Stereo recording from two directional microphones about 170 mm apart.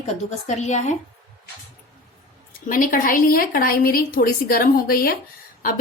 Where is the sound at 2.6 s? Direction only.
55° left (ahead or behind).